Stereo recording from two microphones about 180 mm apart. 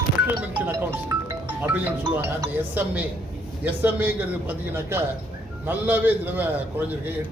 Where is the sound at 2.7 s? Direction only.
10° right (ahead or behind).